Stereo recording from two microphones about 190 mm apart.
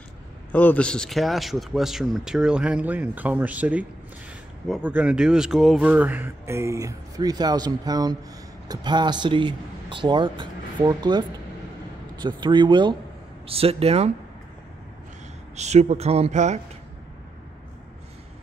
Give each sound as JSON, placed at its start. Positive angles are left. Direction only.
{"t": 0.5, "sound": "speech", "side_deg": 10}
{"t": 15.5, "sound": "speech", "side_deg": -35}